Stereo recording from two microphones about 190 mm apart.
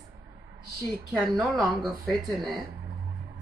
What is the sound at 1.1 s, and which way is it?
Speech, centre (ahead or behind).